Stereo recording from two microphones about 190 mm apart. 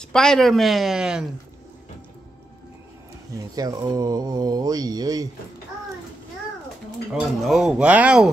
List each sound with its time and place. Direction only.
0.0 s speech: 5° left (ahead or behind)
3.5 s speech: 20° right (ahead or behind)
7.2 s speech: centre (ahead or behind)